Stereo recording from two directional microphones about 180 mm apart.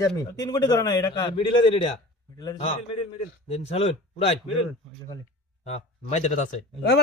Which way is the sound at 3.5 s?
35° left (ahead or behind).